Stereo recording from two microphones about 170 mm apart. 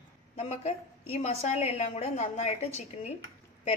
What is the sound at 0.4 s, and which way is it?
A woman's voice, 40° left (ahead or behind).